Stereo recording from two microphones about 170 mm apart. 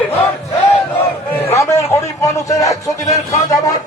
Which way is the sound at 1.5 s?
15° left (ahead or behind).